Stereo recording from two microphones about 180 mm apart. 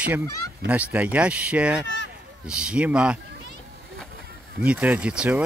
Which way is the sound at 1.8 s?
90° left.